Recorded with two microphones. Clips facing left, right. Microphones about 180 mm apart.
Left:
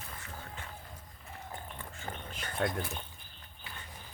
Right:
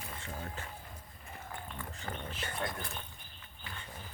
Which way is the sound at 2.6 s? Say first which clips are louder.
Left 7 dB; 70° left (ahead or behind).